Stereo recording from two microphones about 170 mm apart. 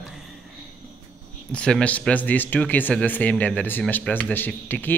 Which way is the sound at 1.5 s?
5° left (ahead or behind).